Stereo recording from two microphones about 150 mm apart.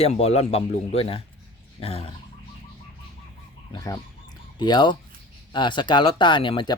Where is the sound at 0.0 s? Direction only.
45° left (ahead or behind).